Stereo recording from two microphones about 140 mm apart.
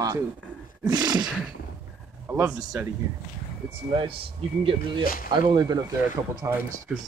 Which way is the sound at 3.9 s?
40° right (ahead or behind).